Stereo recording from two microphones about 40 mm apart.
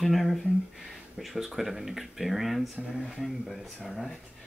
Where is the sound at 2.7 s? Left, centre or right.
Centre.